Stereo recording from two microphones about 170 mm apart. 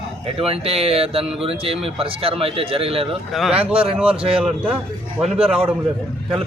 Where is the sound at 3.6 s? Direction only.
35° right (ahead or behind).